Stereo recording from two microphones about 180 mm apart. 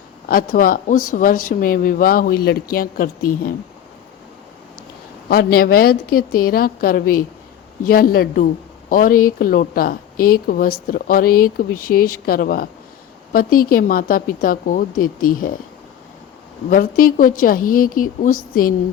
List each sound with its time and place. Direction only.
0.3 s speech: 55° left (ahead or behind)
5.3 s a woman's voice: 55° left (ahead or behind)
16.6 s speech: 50° left (ahead or behind)